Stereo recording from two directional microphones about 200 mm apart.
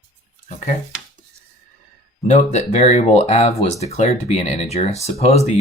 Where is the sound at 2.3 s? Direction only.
35° left (ahead or behind).